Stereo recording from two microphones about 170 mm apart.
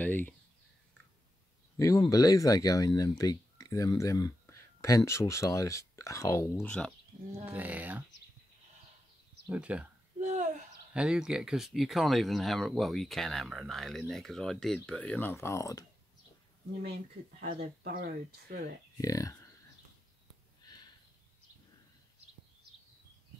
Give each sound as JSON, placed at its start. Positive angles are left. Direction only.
{"t": 0.0, "sound": "speech", "side_deg": 10}
{"t": 1.8, "sound": "speech", "side_deg": 20}
{"t": 7.4, "sound": "speech", "side_deg": -10}
{"t": 9.5, "sound": "speech", "side_deg": -5}
{"t": 10.2, "sound": "a sound", "side_deg": -45}
{"t": 10.9, "sound": "speech", "side_deg": -5}
{"t": 17.8, "sound": "speech", "side_deg": -60}
{"t": 18.9, "sound": "speech", "side_deg": 20}
{"t": 20.6, "sound": "a sound", "side_deg": 25}